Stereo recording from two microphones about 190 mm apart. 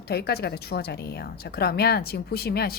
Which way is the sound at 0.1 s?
55° left (ahead or behind).